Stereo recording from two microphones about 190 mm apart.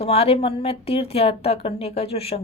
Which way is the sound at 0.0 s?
30° left (ahead or behind).